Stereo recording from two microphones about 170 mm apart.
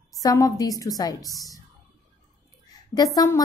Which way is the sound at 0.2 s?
20° left (ahead or behind).